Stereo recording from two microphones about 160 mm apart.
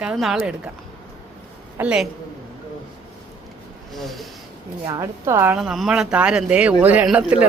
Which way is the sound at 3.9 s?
Centre (ahead or behind).